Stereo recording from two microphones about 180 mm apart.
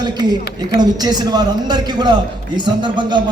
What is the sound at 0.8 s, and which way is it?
A man's voice, 20° right (ahead or behind).